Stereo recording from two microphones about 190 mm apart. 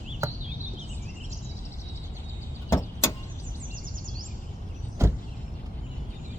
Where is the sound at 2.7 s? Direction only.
15° left (ahead or behind).